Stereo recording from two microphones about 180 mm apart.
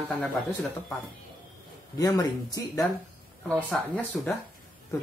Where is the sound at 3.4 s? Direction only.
5° left (ahead or behind).